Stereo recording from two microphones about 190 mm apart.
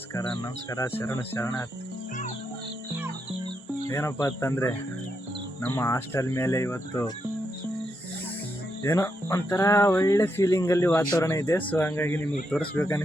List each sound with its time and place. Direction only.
0.1 s speech: 20° left (ahead or behind)
3.8 s speech: 15° left (ahead or behind)
8.8 s speech: 15° left (ahead or behind)